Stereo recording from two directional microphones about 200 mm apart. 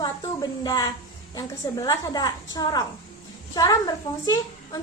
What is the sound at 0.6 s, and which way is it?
A woman's voice, 20° left (ahead or behind).